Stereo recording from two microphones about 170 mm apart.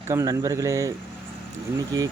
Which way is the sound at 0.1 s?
20° right (ahead or behind).